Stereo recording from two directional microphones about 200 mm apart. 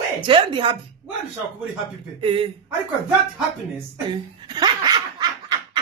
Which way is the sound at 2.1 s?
25° right (ahead or behind).